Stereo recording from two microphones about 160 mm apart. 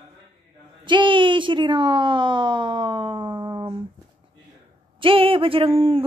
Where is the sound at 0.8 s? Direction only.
30° right (ahead or behind).